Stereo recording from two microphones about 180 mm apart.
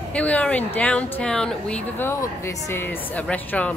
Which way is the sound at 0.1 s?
5° left (ahead or behind).